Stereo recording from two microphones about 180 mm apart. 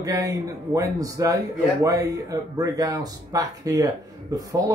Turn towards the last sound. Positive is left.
turn(degrees=-20)  # may be behind; listen again after turning